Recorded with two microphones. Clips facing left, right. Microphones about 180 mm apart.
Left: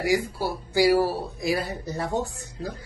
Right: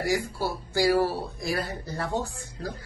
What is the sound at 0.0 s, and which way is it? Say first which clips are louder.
Speech: left 3 dB; 15° left (ahead or behind).